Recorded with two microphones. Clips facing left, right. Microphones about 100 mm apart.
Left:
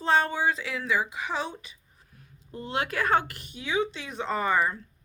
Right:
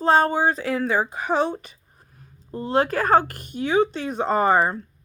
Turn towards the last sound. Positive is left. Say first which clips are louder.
# right 7 dB
turn(degrees=-45)  # may be behind; listen again after turning